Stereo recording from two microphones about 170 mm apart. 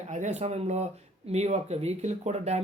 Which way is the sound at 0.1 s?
45° right (ahead or behind).